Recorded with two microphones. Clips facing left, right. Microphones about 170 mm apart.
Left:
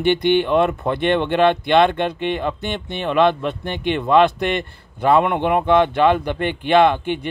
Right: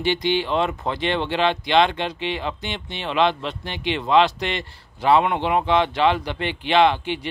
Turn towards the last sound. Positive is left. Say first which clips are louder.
# left 3 dB
turn(degrees=50)  # may be behind; listen again after turning